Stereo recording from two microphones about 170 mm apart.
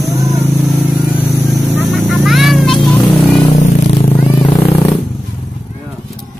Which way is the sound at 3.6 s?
40° left (ahead or behind).